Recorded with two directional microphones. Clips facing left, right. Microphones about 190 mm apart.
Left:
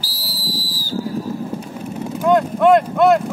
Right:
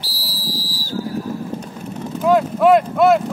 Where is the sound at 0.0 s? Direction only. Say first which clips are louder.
Even; centre (ahead or behind).